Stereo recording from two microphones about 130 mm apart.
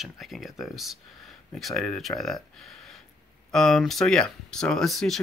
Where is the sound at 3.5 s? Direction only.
5° left (ahead or behind).